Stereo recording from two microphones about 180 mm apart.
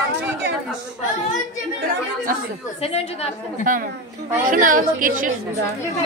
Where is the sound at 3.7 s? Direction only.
50° right (ahead or behind).